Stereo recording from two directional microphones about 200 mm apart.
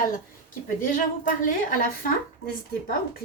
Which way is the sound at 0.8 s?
40° left (ahead or behind).